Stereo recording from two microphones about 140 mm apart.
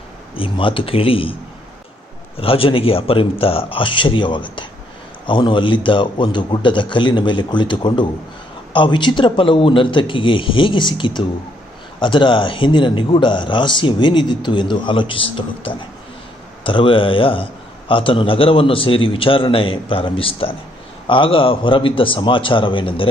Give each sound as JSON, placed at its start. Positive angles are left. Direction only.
{"t": 0.3, "sound": "speech", "side_deg": 40}
{"t": 2.4, "sound": "speech", "side_deg": 40}